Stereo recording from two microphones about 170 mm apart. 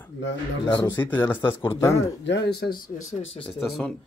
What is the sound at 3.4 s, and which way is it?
Speech, centre (ahead or behind).